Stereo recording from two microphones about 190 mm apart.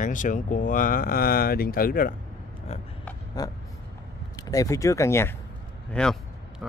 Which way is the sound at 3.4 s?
20° left (ahead or behind).